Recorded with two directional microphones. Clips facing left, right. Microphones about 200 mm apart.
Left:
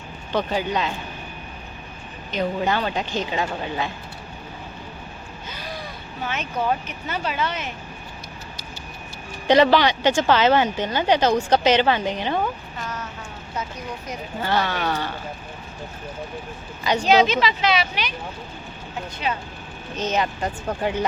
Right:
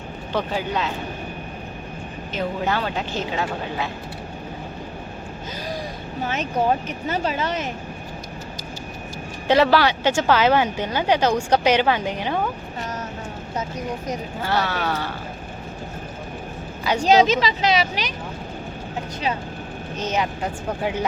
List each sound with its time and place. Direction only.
0.3 s speech: 5° right (ahead or behind)
2.3 s speech: 5° right (ahead or behind)
6.2 s speech: 40° right (ahead or behind)
9.5 s a woman's voice: 5° right (ahead or behind)
12.8 s vehicle: 40° right (ahead or behind)
13.6 s speech: 40° right (ahead or behind)
14.4 s a woman's voice: 5° right (ahead or behind)
17.0 s speech: 40° right (ahead or behind)
20.0 s a woman's voice: 10° right (ahead or behind)